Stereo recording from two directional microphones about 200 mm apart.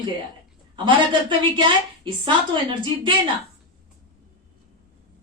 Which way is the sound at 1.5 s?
25° right (ahead or behind).